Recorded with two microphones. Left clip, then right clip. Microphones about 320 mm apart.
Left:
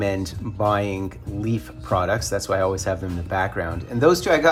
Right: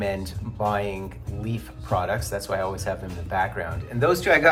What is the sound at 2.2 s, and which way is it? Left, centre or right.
Speech, left.